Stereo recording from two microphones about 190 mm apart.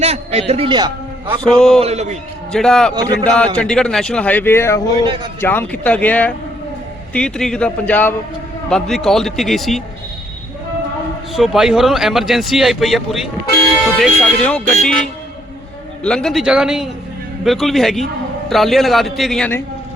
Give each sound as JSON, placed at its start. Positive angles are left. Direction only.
{"t": 0.0, "sound": "a man's voice", "side_deg": -35}
{"t": 1.5, "sound": "speech", "side_deg": 0}
{"t": 1.8, "sound": "a man's voice", "side_deg": -35}
{"t": 2.5, "sound": "speech", "side_deg": 5}
{"t": 2.9, "sound": "speech", "side_deg": -20}
{"t": 3.2, "sound": "speech", "side_deg": 5}
{"t": 11.3, "sound": "speech", "side_deg": 0}